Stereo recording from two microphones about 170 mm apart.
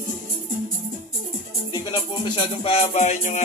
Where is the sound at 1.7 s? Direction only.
25° left (ahead or behind); by 3.4 s 45° left (ahead or behind).